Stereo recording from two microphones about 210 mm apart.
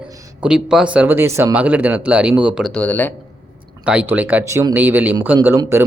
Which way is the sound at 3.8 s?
5° right (ahead or behind).